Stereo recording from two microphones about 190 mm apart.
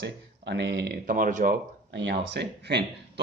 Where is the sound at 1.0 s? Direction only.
45° right (ahead or behind).